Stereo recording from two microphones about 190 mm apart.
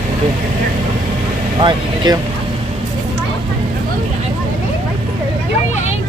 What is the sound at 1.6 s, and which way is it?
Speech, 25° right (ahead or behind).